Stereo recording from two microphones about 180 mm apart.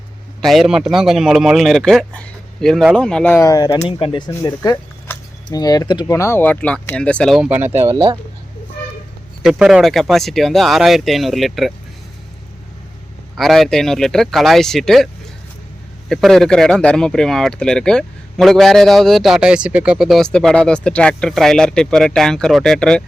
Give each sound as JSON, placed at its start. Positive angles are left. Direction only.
{"t": 0.4, "sound": "speech", "side_deg": 0}
{"t": 3.3, "sound": "speech", "side_deg": 20}
{"t": 3.8, "sound": "speech", "side_deg": 30}
{"t": 9.4, "sound": "speech", "side_deg": 0}
{"t": 13.3, "sound": "speech", "side_deg": 0}